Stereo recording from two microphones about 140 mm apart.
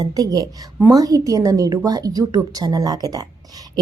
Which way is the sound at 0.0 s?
25° right (ahead or behind).